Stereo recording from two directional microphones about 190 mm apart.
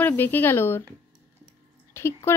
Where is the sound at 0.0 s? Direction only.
10° left (ahead or behind).